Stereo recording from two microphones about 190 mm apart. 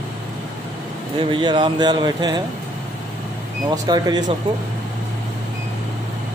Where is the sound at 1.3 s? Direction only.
25° right (ahead or behind).